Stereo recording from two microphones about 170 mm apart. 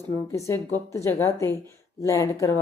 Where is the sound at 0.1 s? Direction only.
15° left (ahead or behind).